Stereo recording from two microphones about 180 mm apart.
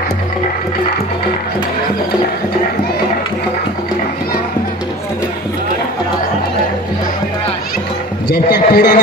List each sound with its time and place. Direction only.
8.3 s a man's voice: 60° left (ahead or behind)